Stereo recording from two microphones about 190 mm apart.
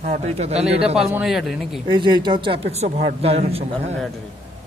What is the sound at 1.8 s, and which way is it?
Speech, 25° right (ahead or behind).